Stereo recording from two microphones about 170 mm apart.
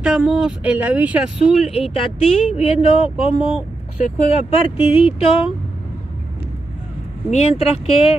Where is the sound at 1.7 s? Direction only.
35° left (ahead or behind).